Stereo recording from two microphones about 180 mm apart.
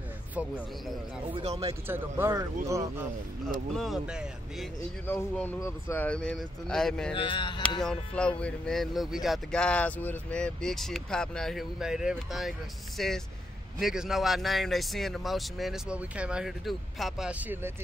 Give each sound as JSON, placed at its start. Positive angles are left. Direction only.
{"t": 1.9, "sound": "speech", "side_deg": -15}
{"t": 3.7, "sound": "speech", "side_deg": 0}
{"t": 5.0, "sound": "speech", "side_deg": 10}
{"t": 7.2, "sound": "speech", "side_deg": 25}
{"t": 7.8, "sound": "speech", "side_deg": 5}